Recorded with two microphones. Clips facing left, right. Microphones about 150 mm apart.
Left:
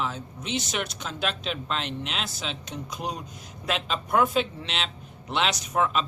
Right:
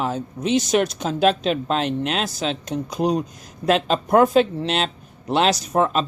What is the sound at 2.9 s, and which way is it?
Speech, 35° right (ahead or behind).